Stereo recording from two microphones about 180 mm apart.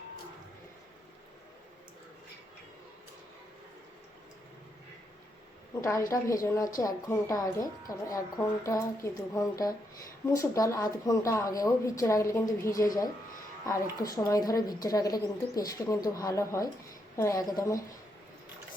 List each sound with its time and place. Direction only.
5.8 s a woman's voice: 15° left (ahead or behind)